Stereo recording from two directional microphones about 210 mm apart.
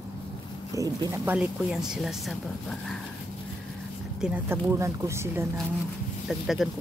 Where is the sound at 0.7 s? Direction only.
15° right (ahead or behind).